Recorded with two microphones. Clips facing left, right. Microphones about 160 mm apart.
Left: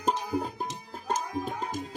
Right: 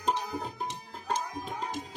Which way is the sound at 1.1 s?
45° left (ahead or behind).